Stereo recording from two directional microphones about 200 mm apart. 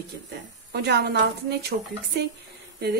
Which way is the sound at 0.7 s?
55° right (ahead or behind).